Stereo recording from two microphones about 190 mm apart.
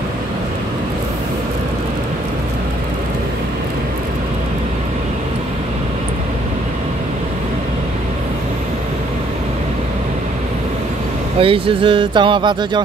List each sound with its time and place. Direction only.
11.3 s speech: 30° right (ahead or behind)